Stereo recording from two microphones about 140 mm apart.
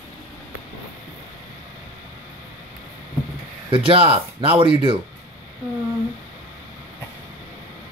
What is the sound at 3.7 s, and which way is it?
Speech, 40° right (ahead or behind).